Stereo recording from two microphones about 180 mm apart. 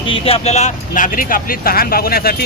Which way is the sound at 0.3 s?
35° left (ahead or behind).